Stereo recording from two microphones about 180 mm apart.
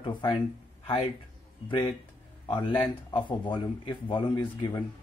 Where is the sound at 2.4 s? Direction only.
25° left (ahead or behind).